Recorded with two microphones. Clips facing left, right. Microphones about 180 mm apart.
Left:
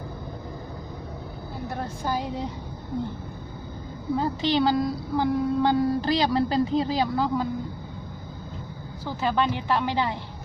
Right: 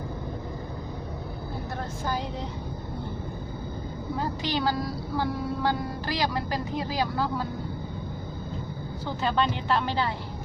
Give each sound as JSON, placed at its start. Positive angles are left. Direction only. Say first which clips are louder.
{"t": 4.2, "sound": "speech", "louder": "left 5 dB", "side_deg": 25}
{"t": 9.0, "sound": "speech", "louder": "left 2 dB", "side_deg": 10}